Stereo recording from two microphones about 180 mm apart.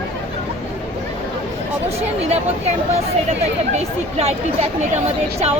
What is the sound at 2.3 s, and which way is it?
Speech, 35° right (ahead or behind).